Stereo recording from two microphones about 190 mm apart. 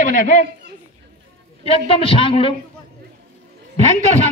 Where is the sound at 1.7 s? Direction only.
30° left (ahead or behind).